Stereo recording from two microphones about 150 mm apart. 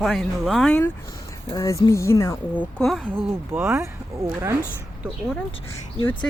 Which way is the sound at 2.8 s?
Centre (ahead or behind).